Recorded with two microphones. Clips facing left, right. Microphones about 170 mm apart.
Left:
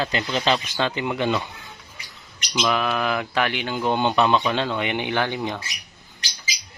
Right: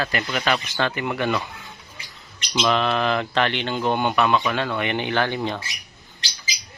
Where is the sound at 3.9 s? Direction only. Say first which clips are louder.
Left 1 dB; 20° left (ahead or behind).